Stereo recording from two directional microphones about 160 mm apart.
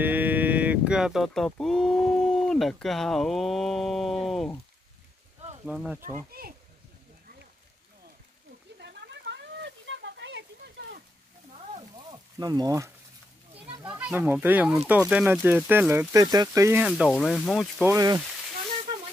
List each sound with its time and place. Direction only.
0.0 s speech: 10° right (ahead or behind)
5.7 s speech: 10° right (ahead or behind)
6.4 s speech: 70° right (ahead or behind)
8.7 s a sound: 90° right
12.1 s speech: 25° right (ahead or behind)
13.8 s speech: 10° right (ahead or behind)
16.8 s speech: 5° right (ahead or behind)
17.8 s speech: 20° right (ahead or behind)